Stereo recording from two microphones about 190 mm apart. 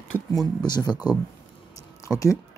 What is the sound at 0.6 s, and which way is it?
Speech, 20° left (ahead or behind).